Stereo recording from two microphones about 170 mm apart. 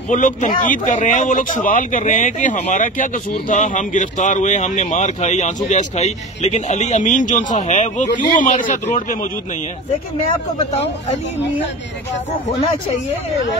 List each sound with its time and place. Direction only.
0.1 s speech: 45° left (ahead or behind)